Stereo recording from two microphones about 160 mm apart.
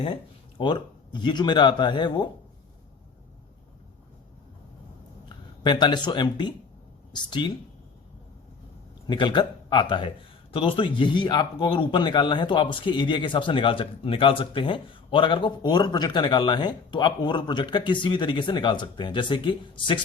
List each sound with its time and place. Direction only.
0.6 s speech: 30° left (ahead or behind)
5.6 s speech: 25° left (ahead or behind)
9.0 s speech: 30° left (ahead or behind)